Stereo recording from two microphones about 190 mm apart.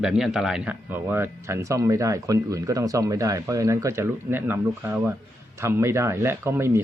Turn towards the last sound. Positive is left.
turn(degrees=-15)  # may be behind; listen again after turning